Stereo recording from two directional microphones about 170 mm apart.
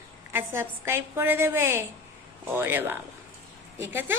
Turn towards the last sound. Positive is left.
turn(degrees=-15)  # may be behind; listen again after turning